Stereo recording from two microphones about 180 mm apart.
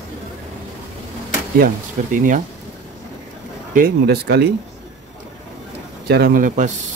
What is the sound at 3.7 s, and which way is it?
Speech, 60° right (ahead or behind).